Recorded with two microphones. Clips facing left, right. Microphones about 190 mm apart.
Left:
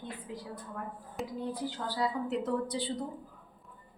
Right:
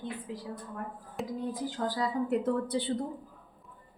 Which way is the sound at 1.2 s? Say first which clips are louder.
Right 2 dB; centre (ahead or behind).